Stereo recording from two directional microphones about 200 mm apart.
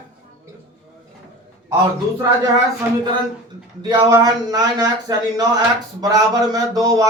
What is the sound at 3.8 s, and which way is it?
A man's voice, 20° right (ahead or behind).